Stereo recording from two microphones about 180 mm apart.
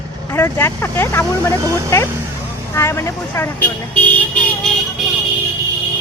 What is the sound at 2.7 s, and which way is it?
Speech, 15° left (ahead or behind).